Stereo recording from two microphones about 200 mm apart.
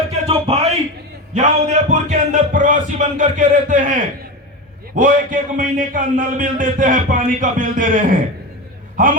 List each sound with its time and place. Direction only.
0.4 s a sound: 30° right (ahead or behind)
1.3 s a man's voice: 35° right (ahead or behind)
4.9 s a man's voice: 40° right (ahead or behind)